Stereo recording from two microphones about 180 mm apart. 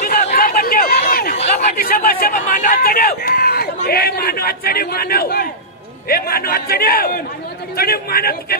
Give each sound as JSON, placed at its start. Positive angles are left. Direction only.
{"t": 0.0, "sound": "chatter", "side_deg": 55}
{"t": 1.3, "sound": "chatter", "side_deg": 40}
{"t": 1.9, "sound": "a sound", "side_deg": 55}
{"t": 6.0, "sound": "a man's voice", "side_deg": 55}